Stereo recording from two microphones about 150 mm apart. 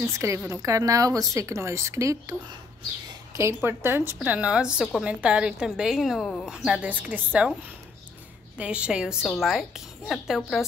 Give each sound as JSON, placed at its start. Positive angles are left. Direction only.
{"t": 0.0, "sound": "speech", "side_deg": -20}
{"t": 3.3, "sound": "a woman's voice", "side_deg": -15}
{"t": 8.5, "sound": "a woman's voice", "side_deg": -5}